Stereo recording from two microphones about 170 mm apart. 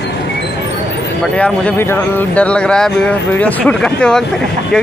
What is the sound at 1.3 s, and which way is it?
Speech, 5° left (ahead or behind).